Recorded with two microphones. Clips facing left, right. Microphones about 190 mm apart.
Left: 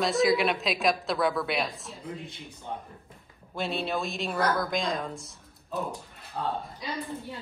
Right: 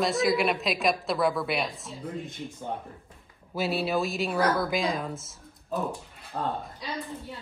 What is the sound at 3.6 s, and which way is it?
A woman's voice, 5° right (ahead or behind).